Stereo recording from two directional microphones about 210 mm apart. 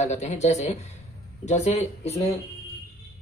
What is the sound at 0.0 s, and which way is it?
A man's voice, 35° left (ahead or behind).